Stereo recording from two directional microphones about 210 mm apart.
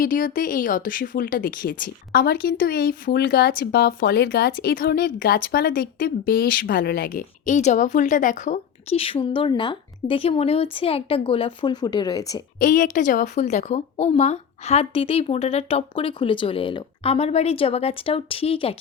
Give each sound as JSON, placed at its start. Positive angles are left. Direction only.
{"t": 0.0, "sound": "a woman's voice", "side_deg": 40}
{"t": 12.5, "sound": "a woman's voice", "side_deg": 40}